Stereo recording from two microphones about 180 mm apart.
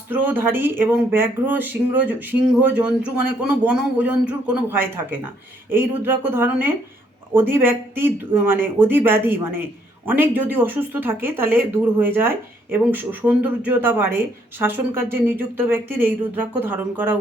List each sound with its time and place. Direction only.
0.1 s speech: 10° right (ahead or behind)